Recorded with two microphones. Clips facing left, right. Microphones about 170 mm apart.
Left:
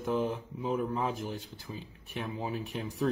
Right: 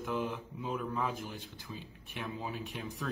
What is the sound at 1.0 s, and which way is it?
Speech, 40° left (ahead or behind).